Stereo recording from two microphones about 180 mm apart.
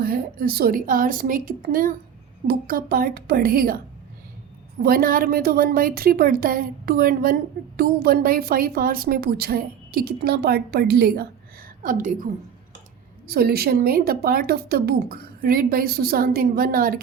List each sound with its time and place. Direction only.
0.0 s a woman's voice: 55° right (ahead or behind)
4.8 s a woman's voice: 55° right (ahead or behind)
11.8 s a woman's voice: 50° right (ahead or behind)